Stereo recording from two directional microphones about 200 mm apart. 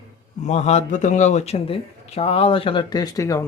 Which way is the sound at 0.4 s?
35° left (ahead or behind).